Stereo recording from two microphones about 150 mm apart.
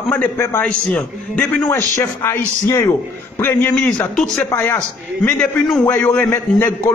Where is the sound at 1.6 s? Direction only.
20° left (ahead or behind).